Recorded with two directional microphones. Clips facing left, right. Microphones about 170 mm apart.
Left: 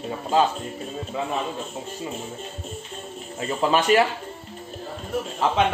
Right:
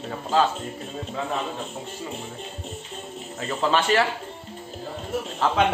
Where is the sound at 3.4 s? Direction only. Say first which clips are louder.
Left 2 dB; 15° left (ahead or behind).